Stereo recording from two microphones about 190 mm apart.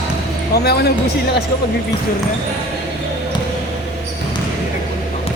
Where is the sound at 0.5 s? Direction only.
60° left (ahead or behind).